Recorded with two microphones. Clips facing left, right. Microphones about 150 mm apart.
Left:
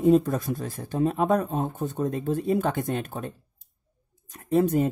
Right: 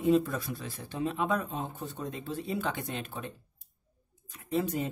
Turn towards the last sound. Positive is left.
turn(degrees=50)  # may be behind; listen again after turning